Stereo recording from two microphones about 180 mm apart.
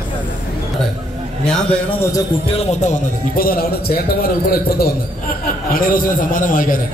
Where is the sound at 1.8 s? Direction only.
30° left (ahead or behind); by 6.8 s 50° left (ahead or behind).